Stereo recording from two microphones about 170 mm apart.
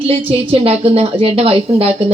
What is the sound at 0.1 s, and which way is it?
A man's voice, 30° right (ahead or behind).